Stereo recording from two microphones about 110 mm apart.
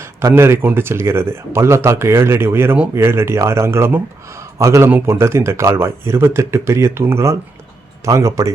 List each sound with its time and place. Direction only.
0.3 s speech: 20° right (ahead or behind)